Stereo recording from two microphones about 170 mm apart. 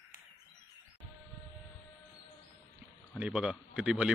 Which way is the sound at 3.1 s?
5° right (ahead or behind).